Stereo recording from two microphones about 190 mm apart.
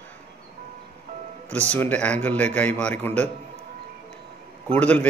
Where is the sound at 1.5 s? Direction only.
10° left (ahead or behind).